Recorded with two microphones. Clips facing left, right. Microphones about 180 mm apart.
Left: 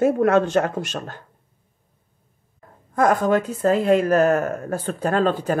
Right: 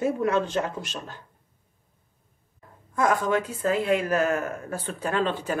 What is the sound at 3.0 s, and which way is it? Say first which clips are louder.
Speech: left 5 dB; 45° left (ahead or behind).